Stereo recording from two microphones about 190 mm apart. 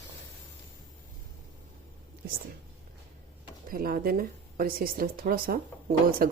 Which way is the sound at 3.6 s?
50° right (ahead or behind).